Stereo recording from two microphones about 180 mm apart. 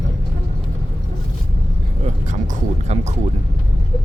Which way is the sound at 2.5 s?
40° right (ahead or behind).